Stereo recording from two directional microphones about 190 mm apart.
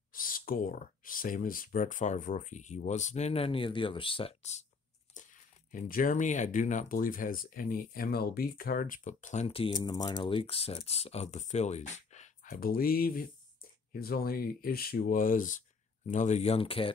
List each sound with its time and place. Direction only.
0.1 s speech: 50° left (ahead or behind)
5.7 s speech: 45° left (ahead or behind); by 16.9 s 30° left (ahead or behind)